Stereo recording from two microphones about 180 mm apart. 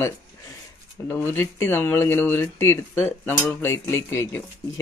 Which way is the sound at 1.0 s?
10° left (ahead or behind).